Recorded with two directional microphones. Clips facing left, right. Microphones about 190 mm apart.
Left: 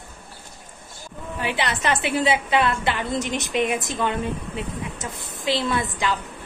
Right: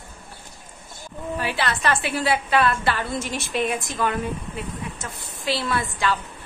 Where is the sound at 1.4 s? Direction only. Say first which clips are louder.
Left 1 dB; 20° left (ahead or behind).